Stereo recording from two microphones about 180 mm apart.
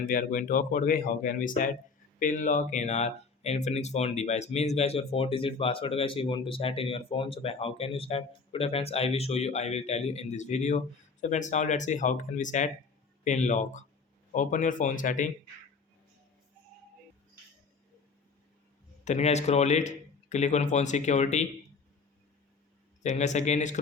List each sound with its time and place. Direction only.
0.0 s speech: 45° left (ahead or behind)
19.0 s speech: 40° left (ahead or behind)
23.0 s speech: 40° left (ahead or behind)